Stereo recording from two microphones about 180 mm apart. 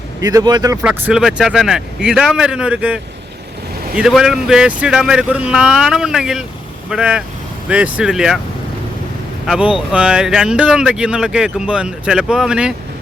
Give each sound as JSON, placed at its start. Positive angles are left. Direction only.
{"t": 0.2, "sound": "speech", "side_deg": -20}
{"t": 0.8, "sound": "speech", "side_deg": -5}
{"t": 9.5, "sound": "speech", "side_deg": -5}